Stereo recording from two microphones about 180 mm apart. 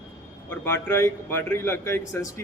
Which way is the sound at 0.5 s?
15° left (ahead or behind).